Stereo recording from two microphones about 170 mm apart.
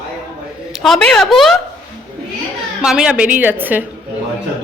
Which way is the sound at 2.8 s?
5° right (ahead or behind).